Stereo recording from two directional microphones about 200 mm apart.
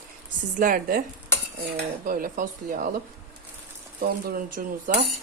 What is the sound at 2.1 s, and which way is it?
Speech, 45° right (ahead or behind).